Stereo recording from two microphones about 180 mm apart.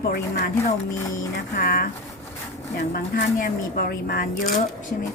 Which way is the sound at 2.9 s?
55° left (ahead or behind).